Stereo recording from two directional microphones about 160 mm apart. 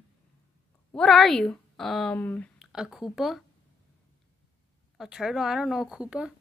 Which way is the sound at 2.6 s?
Centre (ahead or behind).